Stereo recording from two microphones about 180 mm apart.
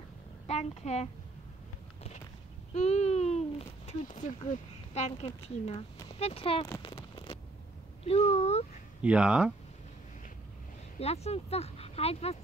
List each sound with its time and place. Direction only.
0.5 s a child's voice: 40° left (ahead or behind)
2.7 s speech: 35° left (ahead or behind)
6.8 s a sound: 30° left (ahead or behind)
8.0 s speech: 35° left (ahead or behind)
9.0 s speech: 5° right (ahead or behind)
11.0 s speech: 35° left (ahead or behind)